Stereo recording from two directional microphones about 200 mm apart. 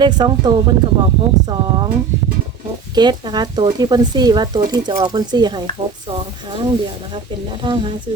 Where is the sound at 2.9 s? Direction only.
20° right (ahead or behind).